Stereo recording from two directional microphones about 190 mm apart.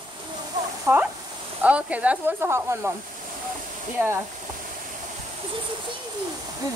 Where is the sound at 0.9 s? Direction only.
15° right (ahead or behind).